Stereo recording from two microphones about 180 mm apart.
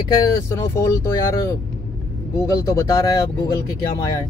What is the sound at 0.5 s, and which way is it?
Speech, 15° left (ahead or behind).